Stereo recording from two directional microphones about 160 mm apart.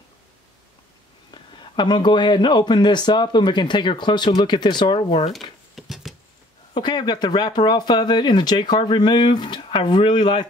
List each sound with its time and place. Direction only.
1.3 s speech: 30° left (ahead or behind)
5.3 s a sound: centre (ahead or behind)
6.7 s speech: 30° left (ahead or behind)